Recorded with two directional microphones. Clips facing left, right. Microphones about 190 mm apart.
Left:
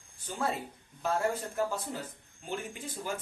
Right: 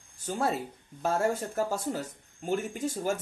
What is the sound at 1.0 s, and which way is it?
Speech, 45° right (ahead or behind).